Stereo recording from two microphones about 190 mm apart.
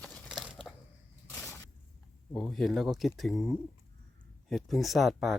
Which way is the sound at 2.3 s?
Centre (ahead or behind).